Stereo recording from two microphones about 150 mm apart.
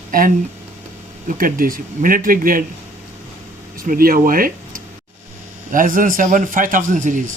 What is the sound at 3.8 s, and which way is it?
A man's voice, 75° right (ahead or behind).